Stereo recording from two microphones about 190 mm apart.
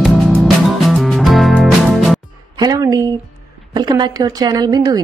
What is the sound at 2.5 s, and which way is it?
Music, 20° right (ahead or behind).